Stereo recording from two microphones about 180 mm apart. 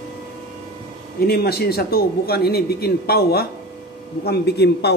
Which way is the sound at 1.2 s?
60° left (ahead or behind).